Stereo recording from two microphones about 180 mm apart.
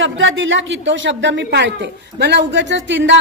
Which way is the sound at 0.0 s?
90° right.